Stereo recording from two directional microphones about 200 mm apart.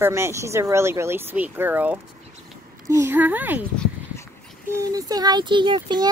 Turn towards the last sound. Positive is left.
turn(degrees=-20)  # may be behind; listen again after turning